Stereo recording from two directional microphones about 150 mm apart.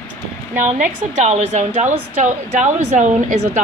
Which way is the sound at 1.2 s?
50° right (ahead or behind).